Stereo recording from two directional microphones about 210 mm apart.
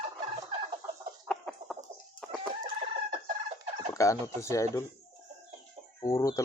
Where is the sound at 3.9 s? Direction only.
15° left (ahead or behind).